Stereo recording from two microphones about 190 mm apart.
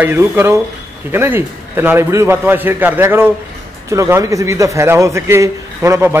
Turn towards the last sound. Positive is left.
turn(degrees=-15)  # may be behind; listen again after turning